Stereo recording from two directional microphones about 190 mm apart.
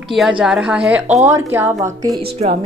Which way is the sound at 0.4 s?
5° right (ahead or behind).